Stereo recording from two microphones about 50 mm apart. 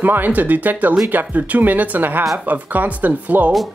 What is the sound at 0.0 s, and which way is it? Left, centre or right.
Speech, right.